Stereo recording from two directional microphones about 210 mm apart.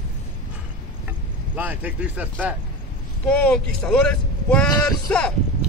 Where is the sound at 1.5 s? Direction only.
10° right (ahead or behind).